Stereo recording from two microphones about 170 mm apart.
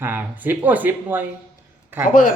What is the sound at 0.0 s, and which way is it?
Speech, 10° right (ahead or behind).